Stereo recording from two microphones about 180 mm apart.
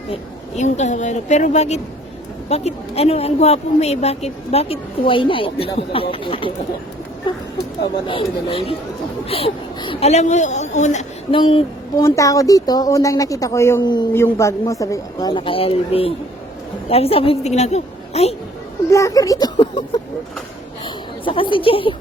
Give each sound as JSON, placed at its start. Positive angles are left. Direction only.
{"t": 0.1, "sound": "a woman's voice", "side_deg": 40}
{"t": 11.3, "sound": "speech", "side_deg": 30}
{"t": 12.0, "sound": "a woman's voice", "side_deg": 15}
{"t": 18.9, "sound": "a woman's voice", "side_deg": 15}
{"t": 20.8, "sound": "a sound", "side_deg": 25}
{"t": 21.5, "sound": "a woman's voice", "side_deg": 30}